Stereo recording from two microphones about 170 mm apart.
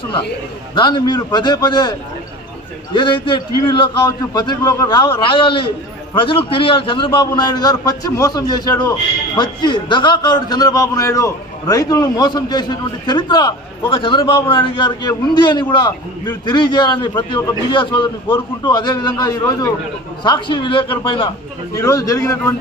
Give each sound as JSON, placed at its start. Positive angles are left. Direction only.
{"t": 0.7, "sound": "a man's voice", "side_deg": 25}